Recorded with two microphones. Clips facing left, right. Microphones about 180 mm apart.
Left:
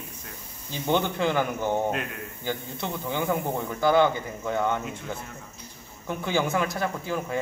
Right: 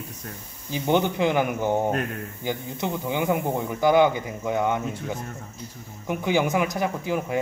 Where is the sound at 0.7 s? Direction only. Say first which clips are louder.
Right 3 dB; 15° right (ahead or behind).